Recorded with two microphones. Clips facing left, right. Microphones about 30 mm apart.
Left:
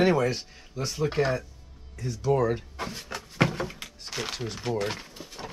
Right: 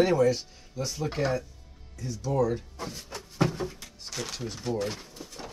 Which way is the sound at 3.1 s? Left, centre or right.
Left.